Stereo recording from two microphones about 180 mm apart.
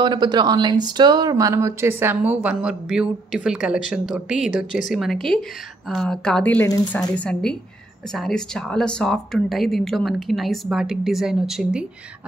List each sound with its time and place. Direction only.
0.0 s speech: 25° right (ahead or behind); by 11.8 s 5° right (ahead or behind)